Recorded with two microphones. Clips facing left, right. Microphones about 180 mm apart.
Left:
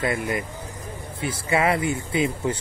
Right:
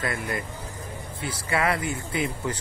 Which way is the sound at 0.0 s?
20° left (ahead or behind).